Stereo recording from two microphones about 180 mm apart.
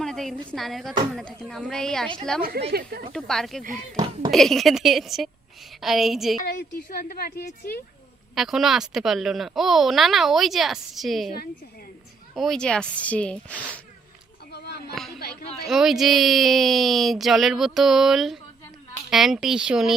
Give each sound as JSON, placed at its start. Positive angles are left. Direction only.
{"t": 0.0, "sound": "a sound", "side_deg": 0}
{"t": 0.5, "sound": "speech", "side_deg": 0}
{"t": 2.4, "sound": "speech", "side_deg": -60}
{"t": 3.1, "sound": "speech", "side_deg": 0}
{"t": 3.6, "sound": "speech", "side_deg": -50}
{"t": 3.9, "sound": "a child's voice", "side_deg": -25}
{"t": 4.3, "sound": "speech", "side_deg": 0}
{"t": 6.4, "sound": "a woman's voice", "side_deg": 50}
{"t": 8.4, "sound": "speech", "side_deg": 0}
{"t": 12.3, "sound": "speech", "side_deg": 0}
{"t": 14.5, "sound": "a sound", "side_deg": 65}
{"t": 15.2, "sound": "speech", "side_deg": 60}
{"t": 15.6, "sound": "speech", "side_deg": 0}